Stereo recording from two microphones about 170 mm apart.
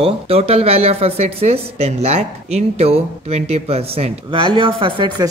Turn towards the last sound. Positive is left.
turn(degrees=-30)  # may be behind; listen again after turning